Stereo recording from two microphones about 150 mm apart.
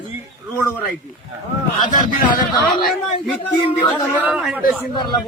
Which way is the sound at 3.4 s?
10° left (ahead or behind).